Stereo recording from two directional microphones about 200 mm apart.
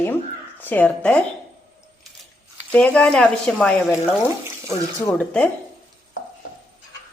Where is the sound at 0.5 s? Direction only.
10° left (ahead or behind).